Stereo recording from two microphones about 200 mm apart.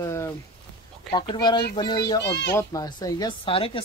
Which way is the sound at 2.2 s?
60° left (ahead or behind).